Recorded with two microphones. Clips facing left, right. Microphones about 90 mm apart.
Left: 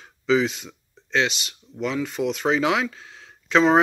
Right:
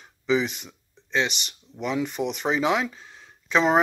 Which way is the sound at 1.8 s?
15° right (ahead or behind).